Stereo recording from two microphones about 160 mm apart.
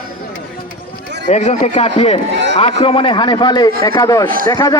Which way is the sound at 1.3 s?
45° left (ahead or behind).